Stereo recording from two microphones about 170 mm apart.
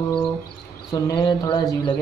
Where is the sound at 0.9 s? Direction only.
25° left (ahead or behind).